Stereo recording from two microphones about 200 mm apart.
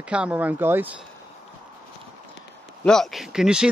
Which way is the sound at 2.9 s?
Centre (ahead or behind).